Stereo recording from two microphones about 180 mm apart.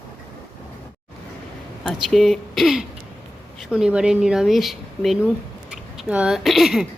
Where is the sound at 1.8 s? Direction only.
Centre (ahead or behind).